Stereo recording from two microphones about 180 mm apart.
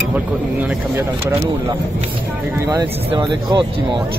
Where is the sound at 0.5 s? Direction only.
10° right (ahead or behind).